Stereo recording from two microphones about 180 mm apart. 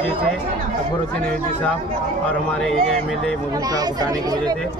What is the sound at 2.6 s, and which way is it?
Speech, centre (ahead or behind).